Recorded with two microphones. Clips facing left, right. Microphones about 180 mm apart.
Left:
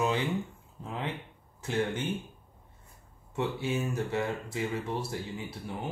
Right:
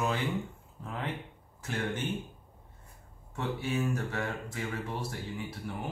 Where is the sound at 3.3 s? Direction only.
20° left (ahead or behind).